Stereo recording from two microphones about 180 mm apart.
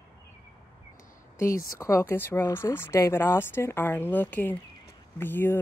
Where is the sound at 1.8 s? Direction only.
15° left (ahead or behind).